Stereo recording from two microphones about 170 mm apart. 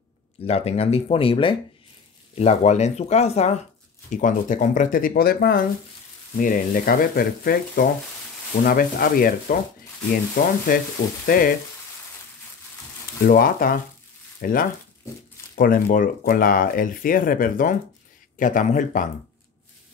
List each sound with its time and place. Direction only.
0.5 s speech: 35° left (ahead or behind); by 5.6 s 65° left (ahead or behind)
6.3 s speech: 50° left (ahead or behind)
10.7 s speech: 55° left (ahead or behind)
13.2 s speech: 55° left (ahead or behind)